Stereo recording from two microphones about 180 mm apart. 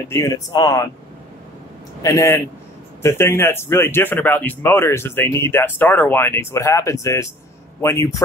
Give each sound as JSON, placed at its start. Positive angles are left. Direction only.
{"t": 0.1, "sound": "speech", "side_deg": 20}
{"t": 2.0, "sound": "speech", "side_deg": 15}